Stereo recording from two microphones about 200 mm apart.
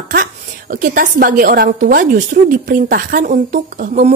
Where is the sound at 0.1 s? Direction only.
45° right (ahead or behind).